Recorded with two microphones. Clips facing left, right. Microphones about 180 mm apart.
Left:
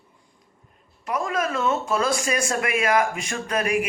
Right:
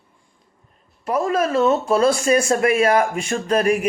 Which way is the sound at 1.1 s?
30° right (ahead or behind).